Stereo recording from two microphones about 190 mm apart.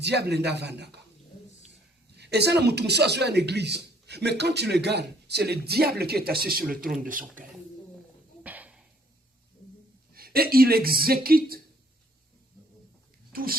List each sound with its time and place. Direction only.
0.0 s a man's voice: 60° right (ahead or behind)
2.1 s a man's voice: 60° right (ahead or behind)
8.4 s a sound: 10° right (ahead or behind)
10.2 s speech: 50° right (ahead or behind)
13.3 s speech: 50° right (ahead or behind)